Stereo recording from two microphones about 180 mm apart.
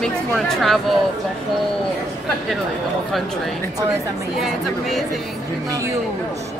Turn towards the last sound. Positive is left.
turn(degrees=-20)  # may be behind; listen again after turning